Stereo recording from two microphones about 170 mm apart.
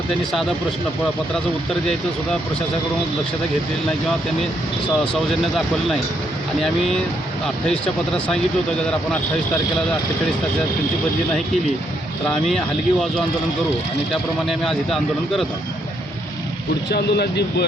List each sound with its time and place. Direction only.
5.3 s speech: centre (ahead or behind)
12.3 s speech: 5° left (ahead or behind)
16.9 s speech: 75° left (ahead or behind)